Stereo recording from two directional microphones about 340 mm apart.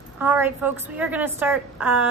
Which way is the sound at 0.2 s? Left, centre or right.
Centre.